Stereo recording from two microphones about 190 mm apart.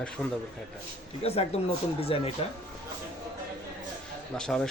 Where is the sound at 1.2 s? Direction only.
30° left (ahead or behind).